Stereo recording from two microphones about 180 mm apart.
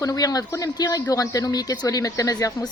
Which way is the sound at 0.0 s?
20° left (ahead or behind).